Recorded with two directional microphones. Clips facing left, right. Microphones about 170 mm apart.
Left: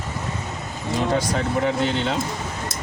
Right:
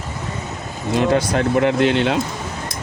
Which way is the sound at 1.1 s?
70° right (ahead or behind).